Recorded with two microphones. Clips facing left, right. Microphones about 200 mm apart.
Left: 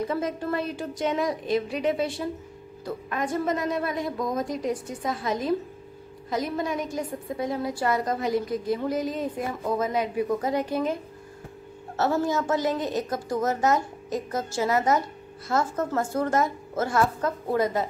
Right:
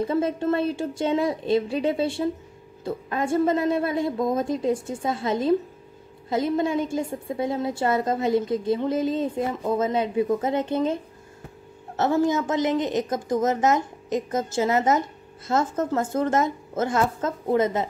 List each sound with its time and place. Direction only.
0.0 s a woman's voice: 30° right (ahead or behind)
12.0 s a woman's voice: 20° right (ahead or behind)